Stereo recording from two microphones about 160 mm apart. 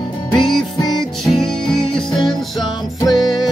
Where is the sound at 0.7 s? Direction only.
25° left (ahead or behind).